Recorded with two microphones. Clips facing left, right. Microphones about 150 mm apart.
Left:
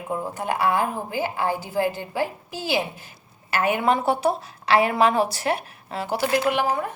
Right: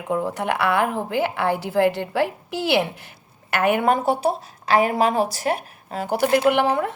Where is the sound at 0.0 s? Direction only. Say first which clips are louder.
Right 4 dB; 75° right (ahead or behind).